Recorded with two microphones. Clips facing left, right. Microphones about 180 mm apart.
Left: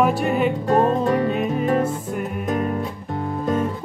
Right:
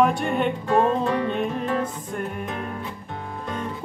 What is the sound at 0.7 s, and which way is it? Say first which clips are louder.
Music: left 2 dB; 40° left (ahead or behind).